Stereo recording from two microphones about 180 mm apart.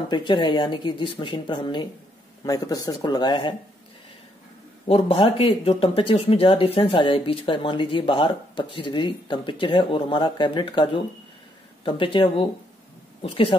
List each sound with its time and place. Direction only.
0.1 s speech: 25° left (ahead or behind)
4.8 s speech: 35° left (ahead or behind)